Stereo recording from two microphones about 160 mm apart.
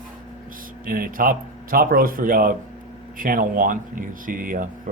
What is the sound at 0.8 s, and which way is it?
Speech, 60° right (ahead or behind).